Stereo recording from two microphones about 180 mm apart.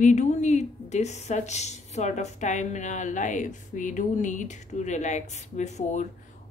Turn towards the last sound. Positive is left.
turn(degrees=40)  # may be behind; listen again after turning